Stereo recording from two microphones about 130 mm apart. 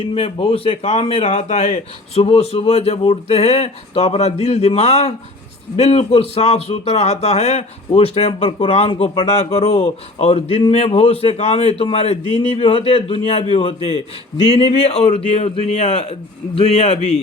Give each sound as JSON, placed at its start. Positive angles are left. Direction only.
{"t": 0.0, "sound": "a man's voice", "side_deg": 45}
{"t": 9.2, "sound": "a man's voice", "side_deg": 55}